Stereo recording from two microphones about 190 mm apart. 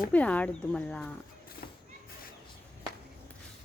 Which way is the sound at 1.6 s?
55° left (ahead or behind).